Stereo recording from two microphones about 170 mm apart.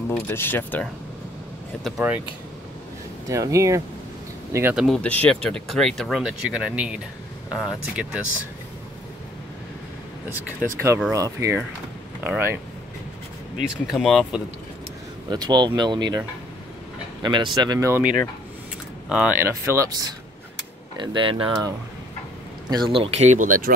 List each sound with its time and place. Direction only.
0.1 s speech: 10° left (ahead or behind)
1.9 s speech: 5° right (ahead or behind)
3.3 s speech: 20° right (ahead or behind)
4.7 s speech: centre (ahead or behind)
11.1 s speech: 15° right (ahead or behind)
13.6 s speech: centre (ahead or behind)
15.2 s speech: 25° right (ahead or behind)
21.0 s speech: 30° right (ahead or behind); by 23.7 s 50° right (ahead or behind)